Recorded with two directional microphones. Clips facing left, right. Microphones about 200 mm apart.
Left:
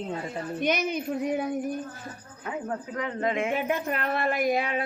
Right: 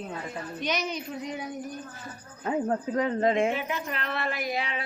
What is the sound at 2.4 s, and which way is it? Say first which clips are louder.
Speech: right 5 dB; 35° right (ahead or behind).